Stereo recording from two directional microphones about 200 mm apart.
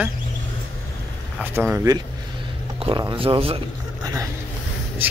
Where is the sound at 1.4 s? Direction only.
10° right (ahead or behind); by 3.6 s 25° right (ahead or behind).